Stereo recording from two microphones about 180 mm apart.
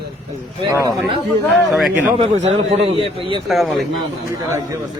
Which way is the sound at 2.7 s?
35° right (ahead or behind).